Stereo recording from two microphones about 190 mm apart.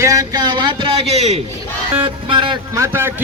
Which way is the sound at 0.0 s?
15° right (ahead or behind).